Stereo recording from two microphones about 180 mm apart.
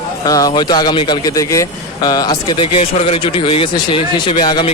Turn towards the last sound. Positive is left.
turn(degrees=25)  # may be behind; listen again after turning